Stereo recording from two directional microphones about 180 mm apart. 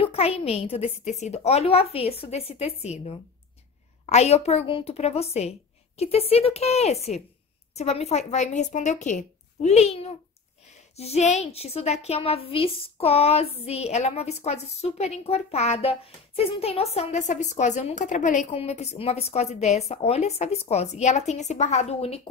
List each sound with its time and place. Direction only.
0.0 s a woman's voice: 35° left (ahead or behind)